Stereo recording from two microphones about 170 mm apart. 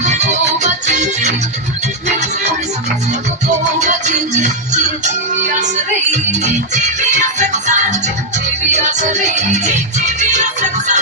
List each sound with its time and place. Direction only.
0.0 s music: 45° right (ahead or behind)
3.1 s music: 45° right (ahead or behind)